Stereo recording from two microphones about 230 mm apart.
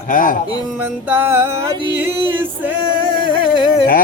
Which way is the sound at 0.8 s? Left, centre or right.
Centre.